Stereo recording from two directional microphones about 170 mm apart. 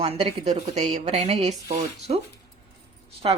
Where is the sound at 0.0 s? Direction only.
35° right (ahead or behind).